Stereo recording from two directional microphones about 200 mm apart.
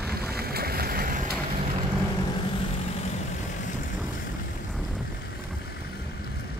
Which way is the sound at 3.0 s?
40° left (ahead or behind).